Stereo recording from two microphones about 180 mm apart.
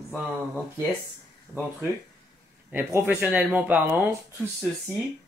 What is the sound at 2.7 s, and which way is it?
Speech, 10° right (ahead or behind).